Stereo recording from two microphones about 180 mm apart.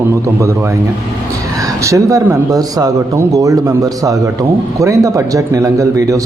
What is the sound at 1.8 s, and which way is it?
A man's voice, 15° right (ahead or behind).